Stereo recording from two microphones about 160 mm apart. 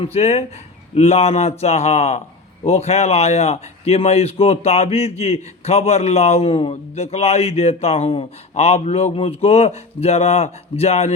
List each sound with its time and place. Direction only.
0.0 s speech: 40° left (ahead or behind)